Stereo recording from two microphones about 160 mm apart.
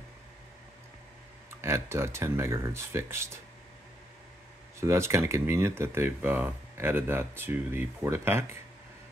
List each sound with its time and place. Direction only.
1.6 s speech: 15° right (ahead or behind)
4.7 s speech: 15° right (ahead or behind)